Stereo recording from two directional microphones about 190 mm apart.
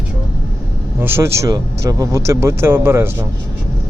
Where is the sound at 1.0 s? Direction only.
10° right (ahead or behind).